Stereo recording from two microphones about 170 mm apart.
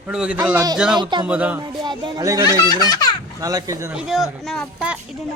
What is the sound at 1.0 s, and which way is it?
Speech, 25° right (ahead or behind).